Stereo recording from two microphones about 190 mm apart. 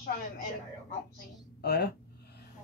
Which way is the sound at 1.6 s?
60° left (ahead or behind).